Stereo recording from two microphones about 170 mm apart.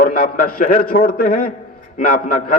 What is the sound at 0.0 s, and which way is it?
A man's voice, 60° left (ahead or behind).